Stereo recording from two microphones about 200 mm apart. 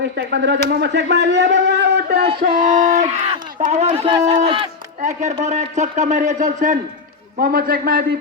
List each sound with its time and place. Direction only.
0.0 s speech: 60° right (ahead or behind)
2.4 s a man's voice: 40° right (ahead or behind); by 4.7 s 25° right (ahead or behind)
5.0 s a man's voice: 35° right (ahead or behind)